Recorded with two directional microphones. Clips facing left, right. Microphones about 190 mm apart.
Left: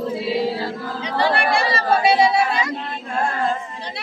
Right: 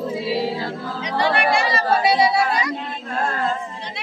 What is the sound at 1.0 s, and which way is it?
Speech, 30° left (ahead or behind).